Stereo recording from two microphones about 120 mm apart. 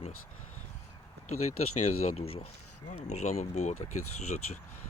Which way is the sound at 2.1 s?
55° left (ahead or behind).